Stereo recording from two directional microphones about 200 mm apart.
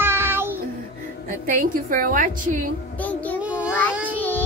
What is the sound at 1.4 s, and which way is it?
Speech, 45° right (ahead or behind).